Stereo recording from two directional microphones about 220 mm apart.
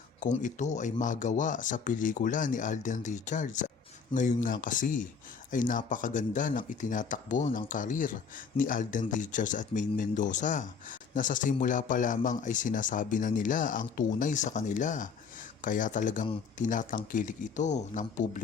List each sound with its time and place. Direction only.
0.2 s speech: 35° left (ahead or behind)